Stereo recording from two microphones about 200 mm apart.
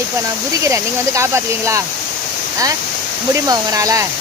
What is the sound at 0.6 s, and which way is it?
Speech, 15° right (ahead or behind).